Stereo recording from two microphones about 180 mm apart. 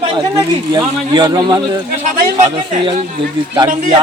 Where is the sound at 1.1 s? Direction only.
25° right (ahead or behind).